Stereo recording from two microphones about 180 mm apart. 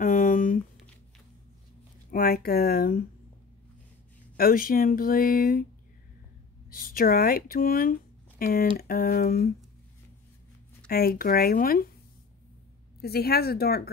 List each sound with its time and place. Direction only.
0.0 s a sound: 45° left (ahead or behind)
2.0 s speech: 55° left (ahead or behind)
4.4 s speech: 55° left (ahead or behind)
6.7 s speech: 55° left (ahead or behind)
10.9 s speech: 60° left (ahead or behind)
13.0 s speech: 60° left (ahead or behind)